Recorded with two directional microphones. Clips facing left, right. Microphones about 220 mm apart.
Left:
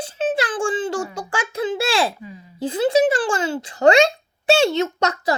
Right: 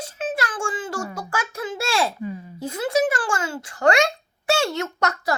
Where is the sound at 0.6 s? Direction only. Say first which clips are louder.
Left 6 dB; 20° left (ahead or behind).